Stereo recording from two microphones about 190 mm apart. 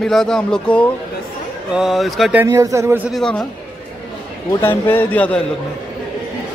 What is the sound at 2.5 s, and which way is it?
Speech, 15° right (ahead or behind).